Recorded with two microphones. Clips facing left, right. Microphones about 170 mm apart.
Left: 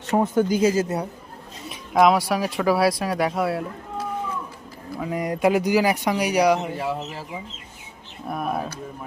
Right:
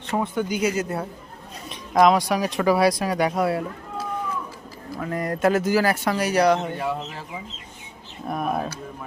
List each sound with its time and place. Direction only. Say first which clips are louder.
0.1 s speech: left 5 dB; 40° left (ahead or behind)
1.7 s speech: even; 5° left (ahead or behind)
4.9 s speech: left 1 dB; 10° left (ahead or behind)
8.3 s speech: right 1 dB; centre (ahead or behind)